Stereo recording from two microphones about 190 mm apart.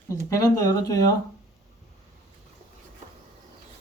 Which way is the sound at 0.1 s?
15° left (ahead or behind).